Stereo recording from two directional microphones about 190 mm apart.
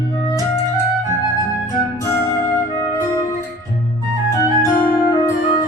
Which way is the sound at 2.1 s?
15° left (ahead or behind).